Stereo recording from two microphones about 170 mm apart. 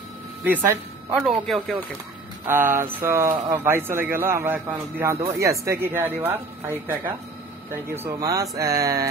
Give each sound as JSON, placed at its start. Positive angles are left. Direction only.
{"t": 0.4, "sound": "speech", "side_deg": -10}
{"t": 2.4, "sound": "speech", "side_deg": -15}